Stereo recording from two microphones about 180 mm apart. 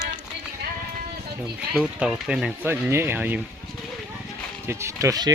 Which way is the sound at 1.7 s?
5° right (ahead or behind).